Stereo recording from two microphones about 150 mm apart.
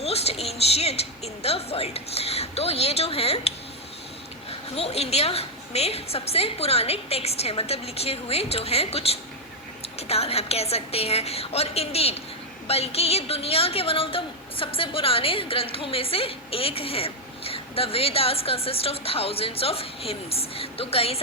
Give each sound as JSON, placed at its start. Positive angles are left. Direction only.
{"t": 0.0, "sound": "a woman's voice", "side_deg": 45}
{"t": 4.7, "sound": "a woman's voice", "side_deg": 45}